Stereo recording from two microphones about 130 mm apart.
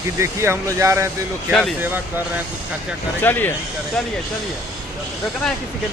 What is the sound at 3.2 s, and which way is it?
Speech, 15° left (ahead or behind).